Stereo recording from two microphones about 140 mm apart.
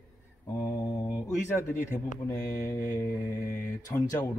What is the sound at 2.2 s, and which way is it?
Speech, 25° left (ahead or behind).